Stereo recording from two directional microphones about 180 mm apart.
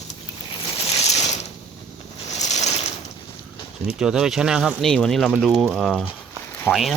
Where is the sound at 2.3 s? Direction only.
40° left (ahead or behind).